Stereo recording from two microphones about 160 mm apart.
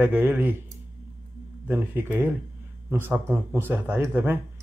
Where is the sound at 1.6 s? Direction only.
15° right (ahead or behind).